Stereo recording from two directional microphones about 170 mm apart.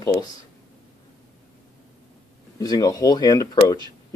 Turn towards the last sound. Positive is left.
turn(degrees=20)  # may be behind; listen again after turning